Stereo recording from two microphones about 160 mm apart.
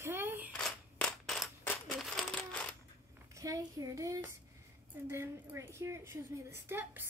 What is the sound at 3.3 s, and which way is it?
A woman's voice, 20° right (ahead or behind).